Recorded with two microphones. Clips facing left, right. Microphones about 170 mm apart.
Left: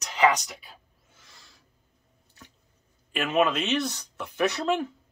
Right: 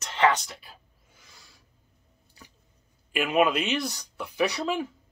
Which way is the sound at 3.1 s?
5° right (ahead or behind).